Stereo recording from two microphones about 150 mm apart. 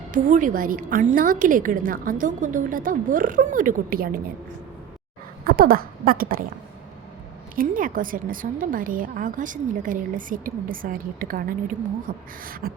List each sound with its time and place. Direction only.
0.1 s a woman's voice: 60° right (ahead or behind)
5.5 s a woman's voice: 75° right (ahead or behind)
7.5 s a woman's voice: 65° right (ahead or behind)